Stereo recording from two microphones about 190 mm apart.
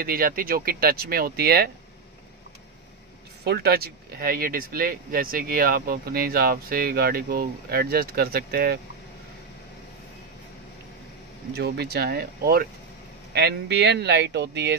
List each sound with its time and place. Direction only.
0.0 s speech: 50° right (ahead or behind)
3.4 s speech: 60° right (ahead or behind)
11.5 s speech: 60° right (ahead or behind)